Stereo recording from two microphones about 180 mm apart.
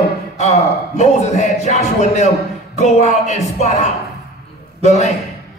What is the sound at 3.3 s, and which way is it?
Speech, 40° left (ahead or behind).